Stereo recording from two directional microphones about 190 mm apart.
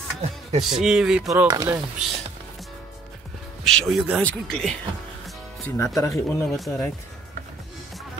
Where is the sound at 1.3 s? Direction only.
15° right (ahead or behind).